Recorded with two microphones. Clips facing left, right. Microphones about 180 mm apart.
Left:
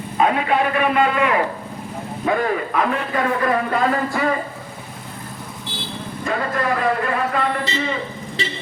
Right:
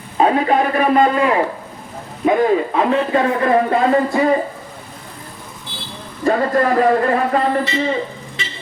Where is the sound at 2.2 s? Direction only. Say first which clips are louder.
Right 6 dB; 25° right (ahead or behind).